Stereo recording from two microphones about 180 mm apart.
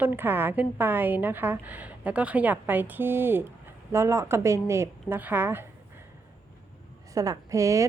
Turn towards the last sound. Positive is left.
turn(degrees=-15)  # may be behind; listen again after turning